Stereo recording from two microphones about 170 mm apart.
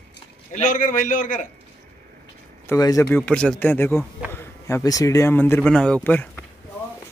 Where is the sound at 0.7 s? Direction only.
50° left (ahead or behind).